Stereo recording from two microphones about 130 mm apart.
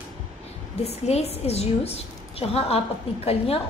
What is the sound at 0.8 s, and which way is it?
A woman's voice, 55° left (ahead or behind).